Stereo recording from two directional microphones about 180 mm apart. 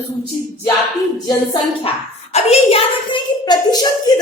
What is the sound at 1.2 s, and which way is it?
Speech, 30° left (ahead or behind).